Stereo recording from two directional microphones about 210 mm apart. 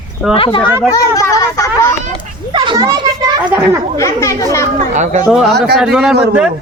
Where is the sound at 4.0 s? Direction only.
15° left (ahead or behind).